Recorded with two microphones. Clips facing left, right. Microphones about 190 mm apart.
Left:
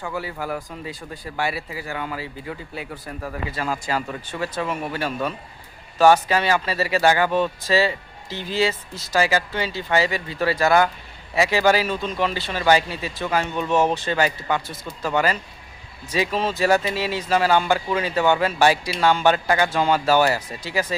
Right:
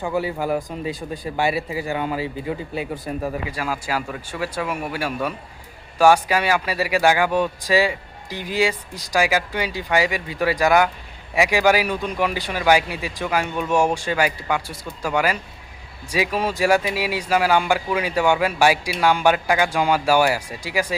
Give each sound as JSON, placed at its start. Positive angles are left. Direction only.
{"t": 0.0, "sound": "speech", "side_deg": -20}
{"t": 3.6, "sound": "speech", "side_deg": -5}